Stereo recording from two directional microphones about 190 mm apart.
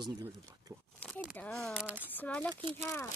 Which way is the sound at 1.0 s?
Centre (ahead or behind).